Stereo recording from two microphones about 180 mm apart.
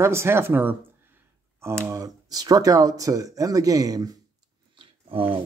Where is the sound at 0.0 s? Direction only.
15° right (ahead or behind).